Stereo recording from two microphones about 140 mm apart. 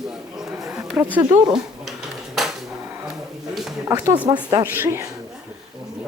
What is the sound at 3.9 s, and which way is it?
Speech, 20° right (ahead or behind).